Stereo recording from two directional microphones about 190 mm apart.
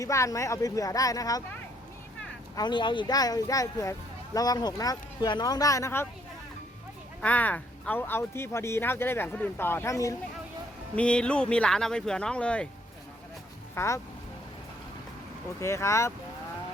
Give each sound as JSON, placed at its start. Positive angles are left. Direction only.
{"t": 0.0, "sound": "speech", "side_deg": 15}
{"t": 2.6, "sound": "speech", "side_deg": 25}
{"t": 7.2, "sound": "speech", "side_deg": 10}
{"t": 10.9, "sound": "speech", "side_deg": 5}
{"t": 13.7, "sound": "speech", "side_deg": 15}
{"t": 15.6, "sound": "speech", "side_deg": 15}